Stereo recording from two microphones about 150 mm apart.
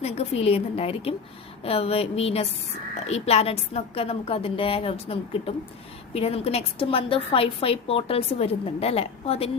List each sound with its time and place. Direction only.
0.0 s a woman's voice: 45° left (ahead or behind)